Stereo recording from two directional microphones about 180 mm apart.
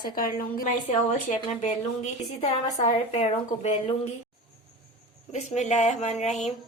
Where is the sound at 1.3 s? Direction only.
40° left (ahead or behind).